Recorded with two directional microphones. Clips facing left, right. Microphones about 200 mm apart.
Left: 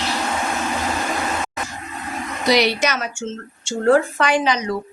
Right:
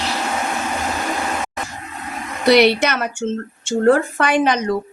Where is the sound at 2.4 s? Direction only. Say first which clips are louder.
Right 5 dB; 60° right (ahead or behind).